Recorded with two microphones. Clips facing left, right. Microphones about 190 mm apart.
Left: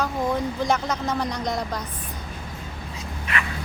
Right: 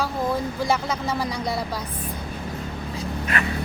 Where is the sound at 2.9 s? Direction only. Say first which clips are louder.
Right 4 dB; 40° right (ahead or behind).